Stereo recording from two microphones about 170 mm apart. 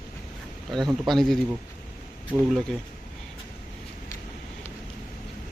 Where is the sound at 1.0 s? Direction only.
Centre (ahead or behind).